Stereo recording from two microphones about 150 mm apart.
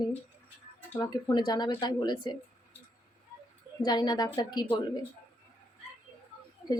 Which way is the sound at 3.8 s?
30° left (ahead or behind).